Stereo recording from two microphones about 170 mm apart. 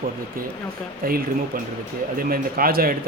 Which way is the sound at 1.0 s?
60° right (ahead or behind).